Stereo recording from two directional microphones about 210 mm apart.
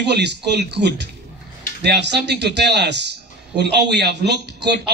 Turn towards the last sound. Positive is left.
turn(degrees=-55)  # may be behind; listen again after turning